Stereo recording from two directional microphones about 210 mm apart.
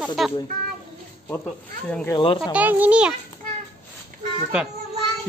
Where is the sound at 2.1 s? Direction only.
25° left (ahead or behind).